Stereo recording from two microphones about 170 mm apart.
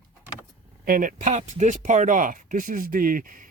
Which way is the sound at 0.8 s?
55° right (ahead or behind).